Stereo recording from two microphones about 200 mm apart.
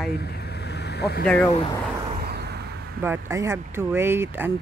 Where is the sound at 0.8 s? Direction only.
55° left (ahead or behind).